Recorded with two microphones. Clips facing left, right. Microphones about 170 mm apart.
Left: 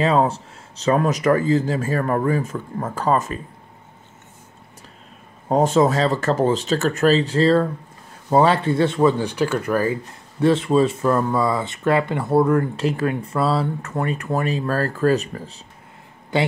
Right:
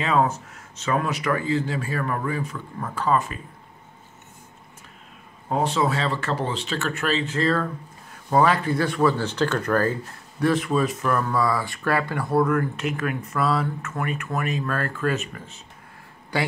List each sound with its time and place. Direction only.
0.0 s speech: 30° left (ahead or behind)
5.5 s speech: 45° left (ahead or behind); by 9.9 s 10° left (ahead or behind)
10.4 s speech: 25° left (ahead or behind)
16.3 s speech: 25° left (ahead or behind)